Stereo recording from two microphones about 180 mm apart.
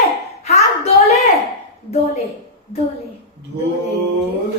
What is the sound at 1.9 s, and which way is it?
Speech, 35° left (ahead or behind).